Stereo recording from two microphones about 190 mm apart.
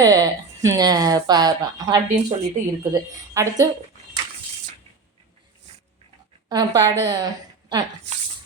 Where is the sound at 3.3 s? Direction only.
15° right (ahead or behind).